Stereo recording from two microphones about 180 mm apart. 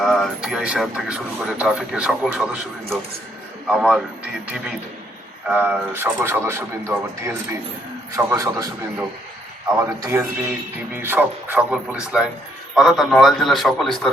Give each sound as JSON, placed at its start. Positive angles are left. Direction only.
{"t": 0.0, "sound": "speech", "side_deg": 0}
{"t": 3.7, "sound": "speech", "side_deg": -5}
{"t": 5.5, "sound": "speech", "side_deg": -5}
{"t": 8.1, "sound": "speech", "side_deg": -20}